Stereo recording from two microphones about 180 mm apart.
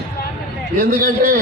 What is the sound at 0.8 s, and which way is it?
Speech, 50° right (ahead or behind).